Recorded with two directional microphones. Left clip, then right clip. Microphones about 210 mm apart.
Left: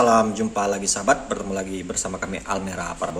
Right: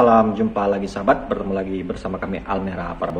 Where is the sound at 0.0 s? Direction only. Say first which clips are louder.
Right 3 dB; 10° left (ahead or behind).